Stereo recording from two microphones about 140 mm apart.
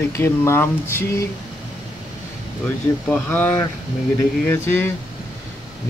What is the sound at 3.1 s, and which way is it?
Speech, 10° left (ahead or behind).